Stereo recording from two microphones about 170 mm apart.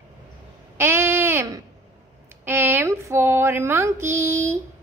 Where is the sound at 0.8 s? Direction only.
15° right (ahead or behind).